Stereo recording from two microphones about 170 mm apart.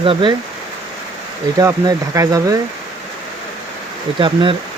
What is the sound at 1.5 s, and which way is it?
Speech, 20° right (ahead or behind).